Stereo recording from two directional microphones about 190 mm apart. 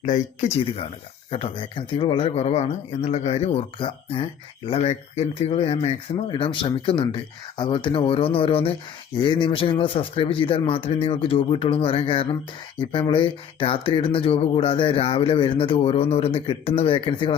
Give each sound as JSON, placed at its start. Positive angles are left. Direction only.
{"t": 0.0, "sound": "speech", "side_deg": 40}
{"t": 1.3, "sound": "speech", "side_deg": 30}